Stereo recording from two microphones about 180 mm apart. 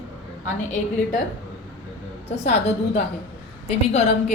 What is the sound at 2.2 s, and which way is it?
Speech, 40° left (ahead or behind).